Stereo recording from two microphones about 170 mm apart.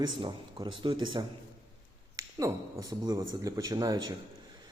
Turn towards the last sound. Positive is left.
turn(degrees=-25)  # may be behind; listen again after turning